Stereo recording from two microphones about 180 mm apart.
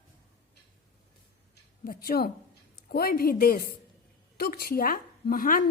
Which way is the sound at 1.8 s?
55° left (ahead or behind).